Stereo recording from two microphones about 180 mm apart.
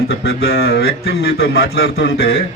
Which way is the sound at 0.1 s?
60° left (ahead or behind).